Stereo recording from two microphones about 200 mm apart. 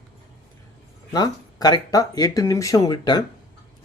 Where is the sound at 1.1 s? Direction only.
20° left (ahead or behind).